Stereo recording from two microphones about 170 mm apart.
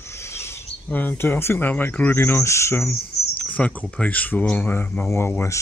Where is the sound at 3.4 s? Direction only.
5° left (ahead or behind).